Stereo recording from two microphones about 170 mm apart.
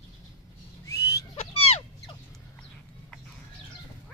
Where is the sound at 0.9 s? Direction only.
75° left (ahead or behind).